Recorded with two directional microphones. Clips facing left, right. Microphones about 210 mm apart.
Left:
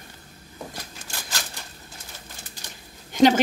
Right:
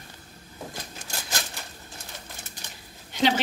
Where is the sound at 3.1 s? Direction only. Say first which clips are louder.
Left 7 dB; 45° left (ahead or behind).